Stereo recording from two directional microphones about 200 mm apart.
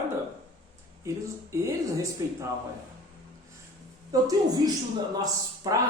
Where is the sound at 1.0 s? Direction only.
15° right (ahead or behind).